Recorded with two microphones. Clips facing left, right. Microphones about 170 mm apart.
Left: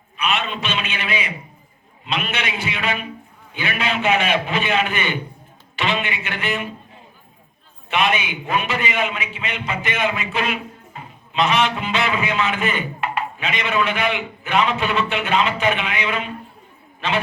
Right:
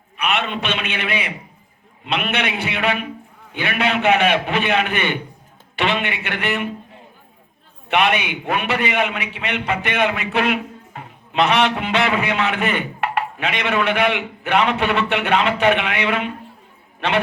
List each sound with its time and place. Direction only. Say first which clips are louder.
0.2 s a man's voice: right 1 dB; 60° right (ahead or behind)
7.9 s a man's voice: right 2 dB; 65° right (ahead or behind)